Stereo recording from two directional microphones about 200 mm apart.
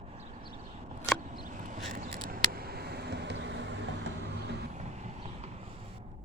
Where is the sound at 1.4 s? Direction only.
40° right (ahead or behind); by 3.7 s 60° right (ahead or behind).